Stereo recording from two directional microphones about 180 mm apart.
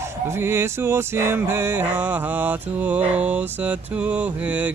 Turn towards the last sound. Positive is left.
turn(degrees=-10)  # may be behind; listen again after turning